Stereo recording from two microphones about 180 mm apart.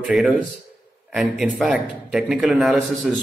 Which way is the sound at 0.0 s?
Centre (ahead or behind).